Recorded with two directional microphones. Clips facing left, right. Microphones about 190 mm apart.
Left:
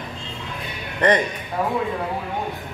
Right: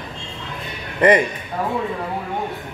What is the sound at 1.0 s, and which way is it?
Speech, 10° right (ahead or behind).